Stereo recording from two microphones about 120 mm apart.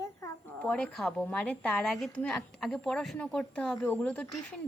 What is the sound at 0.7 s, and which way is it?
A woman's voice, 10° left (ahead or behind).